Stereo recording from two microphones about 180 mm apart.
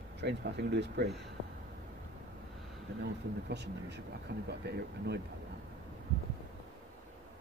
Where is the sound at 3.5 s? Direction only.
70° right (ahead or behind).